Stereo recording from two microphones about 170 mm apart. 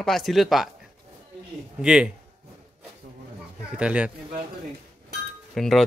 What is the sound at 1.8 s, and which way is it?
Speech, 5° right (ahead or behind).